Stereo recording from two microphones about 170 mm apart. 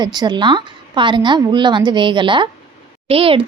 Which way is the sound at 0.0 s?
25° right (ahead or behind).